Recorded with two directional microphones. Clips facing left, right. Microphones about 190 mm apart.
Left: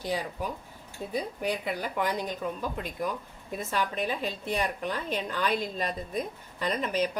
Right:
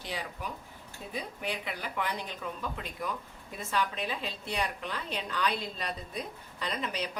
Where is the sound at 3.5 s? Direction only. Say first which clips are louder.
Left 2 dB; 45° left (ahead or behind).